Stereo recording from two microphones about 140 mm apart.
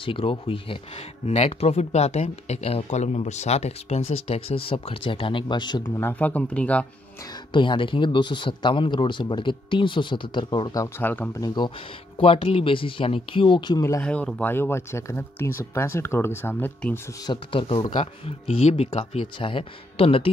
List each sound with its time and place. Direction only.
0.0 s speech: 40° left (ahead or behind)
6.0 s speech: 10° left (ahead or behind)
7.5 s speech: 35° left (ahead or behind)
11.0 s speech: 15° left (ahead or behind)
11.3 s speech: 30° left (ahead or behind)
12.2 s speech: 40° left (ahead or behind); by 14.0 s 25° left (ahead or behind)
14.0 s speech: 10° left (ahead or behind)
17.3 s speech: 40° left (ahead or behind)